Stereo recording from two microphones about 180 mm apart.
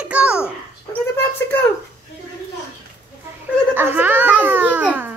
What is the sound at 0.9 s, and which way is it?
Speech, 10° left (ahead or behind).